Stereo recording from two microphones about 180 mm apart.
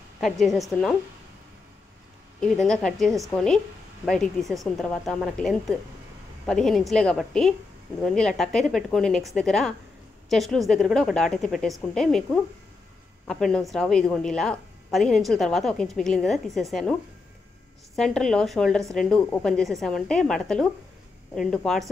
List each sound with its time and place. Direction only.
0.2 s speech: centre (ahead or behind)
2.4 s speech: centre (ahead or behind)
17.9 s speech: centre (ahead or behind)